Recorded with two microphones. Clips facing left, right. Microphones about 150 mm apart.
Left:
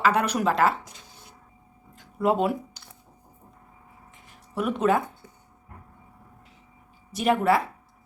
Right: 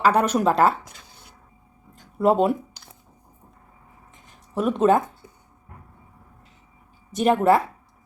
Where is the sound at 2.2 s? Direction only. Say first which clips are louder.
Right 4 dB; 30° right (ahead or behind).